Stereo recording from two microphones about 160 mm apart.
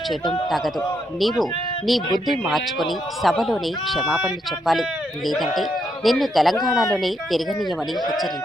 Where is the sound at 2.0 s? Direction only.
25° left (ahead or behind).